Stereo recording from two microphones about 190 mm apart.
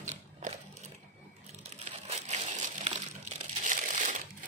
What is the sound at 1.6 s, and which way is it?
Crumpling, 35° right (ahead or behind).